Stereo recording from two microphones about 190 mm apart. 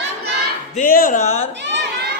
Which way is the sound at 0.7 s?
45° left (ahead or behind).